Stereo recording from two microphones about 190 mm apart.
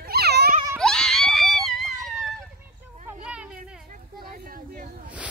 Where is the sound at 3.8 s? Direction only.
45° right (ahead or behind).